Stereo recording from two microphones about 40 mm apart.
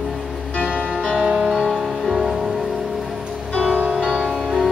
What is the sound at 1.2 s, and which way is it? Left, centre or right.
Music, right.